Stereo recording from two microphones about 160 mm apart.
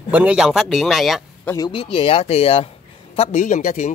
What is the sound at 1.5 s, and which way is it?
Speech, 25° left (ahead or behind).